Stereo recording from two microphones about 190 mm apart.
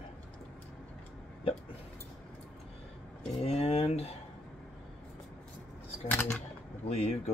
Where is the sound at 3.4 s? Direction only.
35° left (ahead or behind).